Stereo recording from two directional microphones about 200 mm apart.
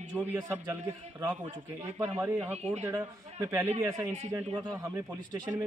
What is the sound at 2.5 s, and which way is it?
Speech, 35° right (ahead or behind).